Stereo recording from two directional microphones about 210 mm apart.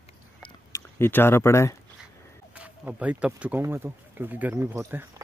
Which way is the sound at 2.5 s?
5° right (ahead or behind).